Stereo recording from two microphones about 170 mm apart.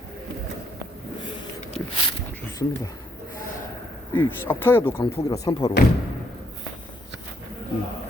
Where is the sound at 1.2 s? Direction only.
25° left (ahead or behind).